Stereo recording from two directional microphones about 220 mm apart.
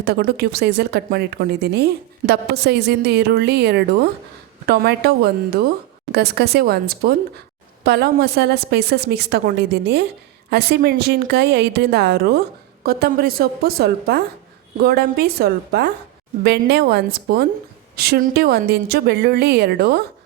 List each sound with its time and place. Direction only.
0.0 s a woman's voice: 45° right (ahead or behind)